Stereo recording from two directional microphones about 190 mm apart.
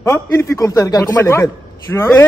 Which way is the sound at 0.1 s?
15° left (ahead or behind).